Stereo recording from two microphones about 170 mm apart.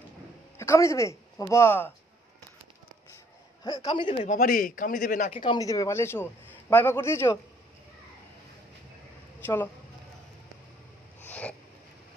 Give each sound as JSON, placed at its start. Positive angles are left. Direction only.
{"t": 0.6, "sound": "speech", "side_deg": 15}
{"t": 3.6, "sound": "a man's voice", "side_deg": 25}
{"t": 4.1, "sound": "speech", "side_deg": 45}
{"t": 5.3, "sound": "a man's voice", "side_deg": 30}
{"t": 11.2, "sound": "a sound", "side_deg": 5}